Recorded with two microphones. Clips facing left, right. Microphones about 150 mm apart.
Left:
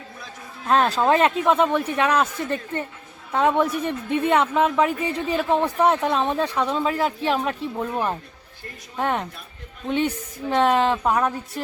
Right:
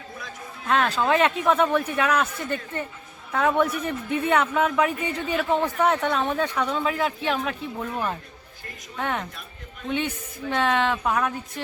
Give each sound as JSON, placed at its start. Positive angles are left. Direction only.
{"t": 0.7, "sound": "speech", "side_deg": 35}
{"t": 3.3, "sound": "speech", "side_deg": 30}